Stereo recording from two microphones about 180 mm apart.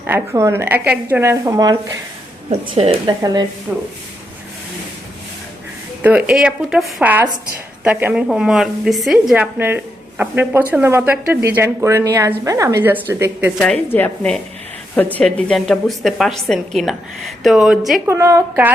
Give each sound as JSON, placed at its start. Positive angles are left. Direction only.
{"t": 0.0, "sound": "a woman's voice", "side_deg": -15}
{"t": 2.5, "sound": "a woman's voice", "side_deg": -35}
{"t": 3.7, "sound": "a woman's voice", "side_deg": -10}
{"t": 6.0, "sound": "a woman's voice", "side_deg": -5}
{"t": 13.6, "sound": "a woman's voice", "side_deg": 5}
{"t": 18.0, "sound": "a woman's voice", "side_deg": -15}